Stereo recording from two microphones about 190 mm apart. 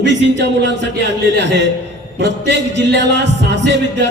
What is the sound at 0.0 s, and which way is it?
A man's voice, 70° right (ahead or behind).